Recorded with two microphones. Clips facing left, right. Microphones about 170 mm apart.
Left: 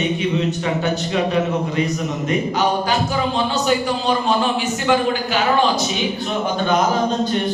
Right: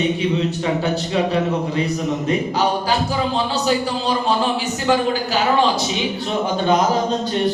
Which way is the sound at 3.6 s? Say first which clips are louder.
Left 1 dB; 30° right (ahead or behind).